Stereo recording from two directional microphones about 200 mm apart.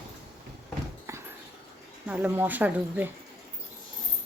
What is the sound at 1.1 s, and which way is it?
Dog, 15° right (ahead or behind).